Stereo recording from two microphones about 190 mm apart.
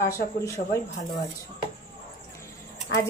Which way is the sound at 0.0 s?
15° left (ahead or behind).